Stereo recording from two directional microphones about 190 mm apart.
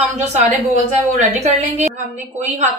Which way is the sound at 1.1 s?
35° right (ahead or behind).